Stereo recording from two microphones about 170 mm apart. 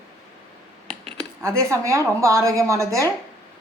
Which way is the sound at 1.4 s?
15° right (ahead or behind).